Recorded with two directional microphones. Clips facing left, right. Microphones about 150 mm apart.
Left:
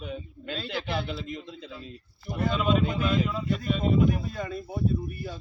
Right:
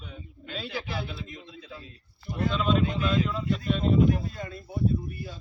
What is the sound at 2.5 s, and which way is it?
Speech, 5° left (ahead or behind).